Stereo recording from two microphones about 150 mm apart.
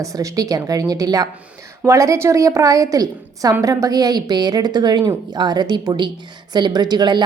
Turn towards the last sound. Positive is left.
turn(degrees=-30)  # may be behind; listen again after turning